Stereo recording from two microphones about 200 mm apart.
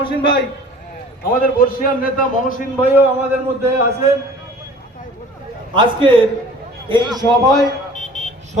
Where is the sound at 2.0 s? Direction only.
45° left (ahead or behind).